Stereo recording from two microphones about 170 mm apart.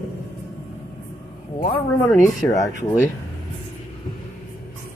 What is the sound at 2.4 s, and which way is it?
Speech, 20° left (ahead or behind).